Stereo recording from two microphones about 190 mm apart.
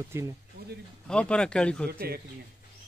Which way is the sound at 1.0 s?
5° left (ahead or behind).